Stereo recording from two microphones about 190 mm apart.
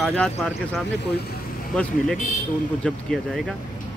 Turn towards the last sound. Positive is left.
turn(degrees=0)  # may be behind; listen again after turning